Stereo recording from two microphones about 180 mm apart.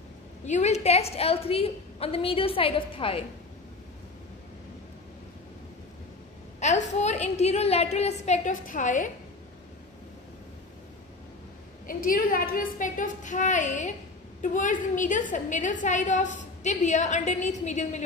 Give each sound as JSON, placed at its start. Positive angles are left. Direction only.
{"t": 0.5, "sound": "a woman's voice", "side_deg": 40}
{"t": 6.6, "sound": "a woman's voice", "side_deg": 40}
{"t": 11.9, "sound": "a woman's voice", "side_deg": 50}